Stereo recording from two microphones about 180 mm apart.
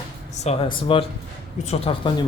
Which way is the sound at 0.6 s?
30° left (ahead or behind).